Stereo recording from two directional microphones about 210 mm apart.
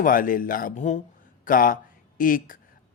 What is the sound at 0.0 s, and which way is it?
A woman's voice, 40° left (ahead or behind).